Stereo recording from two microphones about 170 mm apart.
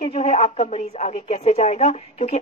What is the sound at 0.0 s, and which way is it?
Speech, 40° left (ahead or behind).